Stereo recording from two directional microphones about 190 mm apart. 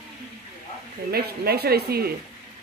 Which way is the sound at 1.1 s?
55° right (ahead or behind).